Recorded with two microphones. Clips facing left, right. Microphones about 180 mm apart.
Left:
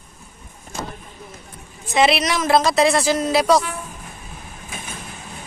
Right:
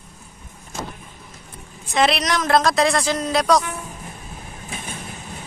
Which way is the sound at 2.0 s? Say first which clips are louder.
Left 2 dB; 5° left (ahead or behind).